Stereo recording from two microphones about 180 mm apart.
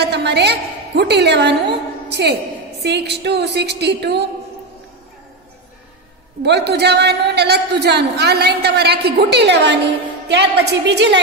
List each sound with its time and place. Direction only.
0.0 s a woman's voice: 65° right (ahead or behind)
6.4 s a man's voice: 65° right (ahead or behind)